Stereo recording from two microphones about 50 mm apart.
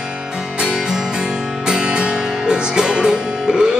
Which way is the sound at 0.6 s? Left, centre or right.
Centre.